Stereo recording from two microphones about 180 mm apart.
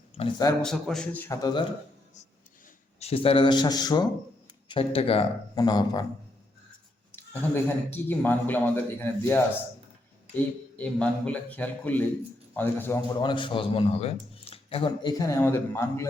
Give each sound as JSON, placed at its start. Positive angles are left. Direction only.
{"t": 0.2, "sound": "speech", "side_deg": 25}
{"t": 0.6, "sound": "a man's voice", "side_deg": 0}
{"t": 3.2, "sound": "speech", "side_deg": 25}
{"t": 7.1, "sound": "a man's voice", "side_deg": 10}
{"t": 13.2, "sound": "speech", "side_deg": 25}